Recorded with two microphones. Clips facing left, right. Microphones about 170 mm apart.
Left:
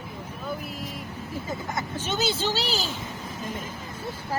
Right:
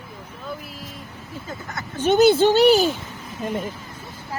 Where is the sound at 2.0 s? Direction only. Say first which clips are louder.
Right 15 dB; 55° right (ahead or behind).